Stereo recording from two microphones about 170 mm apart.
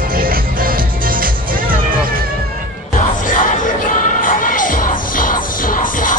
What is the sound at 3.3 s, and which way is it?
Music, 50° left (ahead or behind).